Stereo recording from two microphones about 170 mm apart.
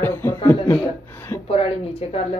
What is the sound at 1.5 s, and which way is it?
Speech, 35° left (ahead or behind).